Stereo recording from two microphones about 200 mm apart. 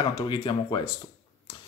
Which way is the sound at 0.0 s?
20° left (ahead or behind).